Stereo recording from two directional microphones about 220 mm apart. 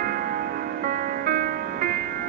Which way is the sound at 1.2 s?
40° right (ahead or behind).